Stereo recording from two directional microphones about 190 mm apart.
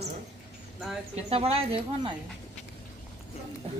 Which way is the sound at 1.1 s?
30° right (ahead or behind).